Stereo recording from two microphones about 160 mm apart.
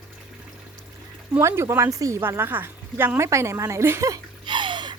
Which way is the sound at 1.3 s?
15° right (ahead or behind).